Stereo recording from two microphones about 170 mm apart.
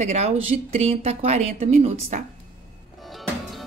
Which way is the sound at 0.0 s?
40° right (ahead or behind).